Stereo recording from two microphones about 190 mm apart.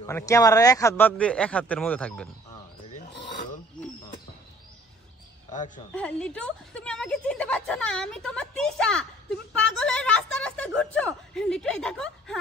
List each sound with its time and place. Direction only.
0.0 s speech: 15° left (ahead or behind)
3.1 s filing: 65° left (ahead or behind)
5.9 s speech: 5° left (ahead or behind)